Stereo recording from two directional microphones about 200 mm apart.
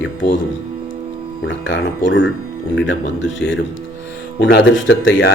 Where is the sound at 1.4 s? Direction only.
65° left (ahead or behind).